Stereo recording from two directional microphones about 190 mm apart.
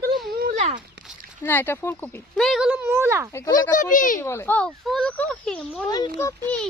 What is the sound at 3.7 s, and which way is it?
Speech, 45° left (ahead or behind).